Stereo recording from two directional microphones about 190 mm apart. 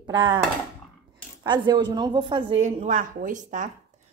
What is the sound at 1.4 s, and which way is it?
A woman's voice, 25° right (ahead or behind).